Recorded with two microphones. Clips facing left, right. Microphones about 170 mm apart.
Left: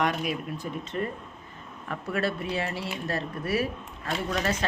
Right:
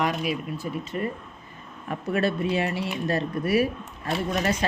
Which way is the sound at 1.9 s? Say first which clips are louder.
Right 4 dB; 20° right (ahead or behind).